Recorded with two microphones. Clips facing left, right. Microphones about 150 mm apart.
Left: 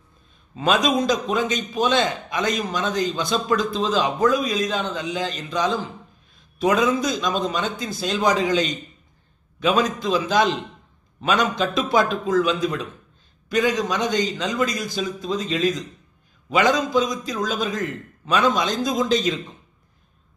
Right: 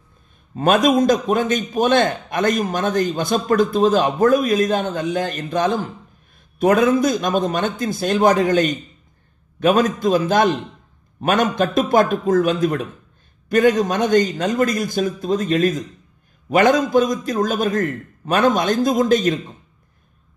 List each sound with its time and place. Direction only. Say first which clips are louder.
0.6 s a man's voice: right 5 dB; 55° right (ahead or behind)